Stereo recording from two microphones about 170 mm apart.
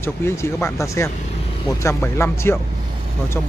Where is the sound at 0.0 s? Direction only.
15° left (ahead or behind).